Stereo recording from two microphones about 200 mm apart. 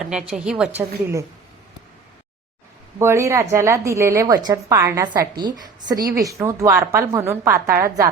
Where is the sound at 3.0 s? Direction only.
15° right (ahead or behind).